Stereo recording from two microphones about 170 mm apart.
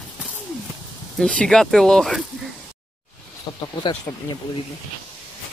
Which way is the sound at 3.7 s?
30° left (ahead or behind).